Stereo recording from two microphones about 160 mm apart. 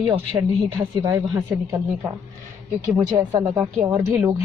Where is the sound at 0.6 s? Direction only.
30° right (ahead or behind).